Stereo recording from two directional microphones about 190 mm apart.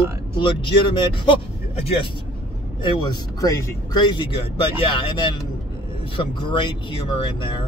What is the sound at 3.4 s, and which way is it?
Speech, 20° left (ahead or behind).